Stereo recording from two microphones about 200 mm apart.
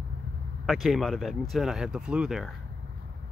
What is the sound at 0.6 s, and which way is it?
Speech, centre (ahead or behind).